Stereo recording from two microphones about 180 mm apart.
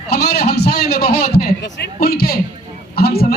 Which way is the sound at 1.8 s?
55° left (ahead or behind).